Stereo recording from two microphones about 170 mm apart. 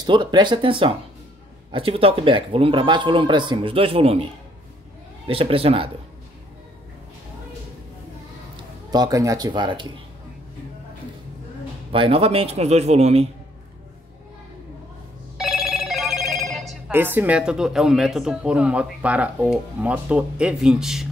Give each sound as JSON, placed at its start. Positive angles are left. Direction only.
{"t": 0.0, "sound": "speech", "side_deg": -25}
{"t": 8.5, "sound": "a man's voice", "side_deg": -25}
{"t": 11.9, "sound": "speech", "side_deg": -35}
{"t": 15.3, "sound": "telephone bell ringing", "side_deg": 0}
{"t": 16.8, "sound": "speech", "side_deg": -10}